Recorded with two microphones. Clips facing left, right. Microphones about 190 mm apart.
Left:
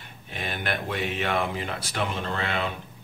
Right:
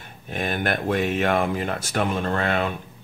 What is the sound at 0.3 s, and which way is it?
Speech, 50° right (ahead or behind).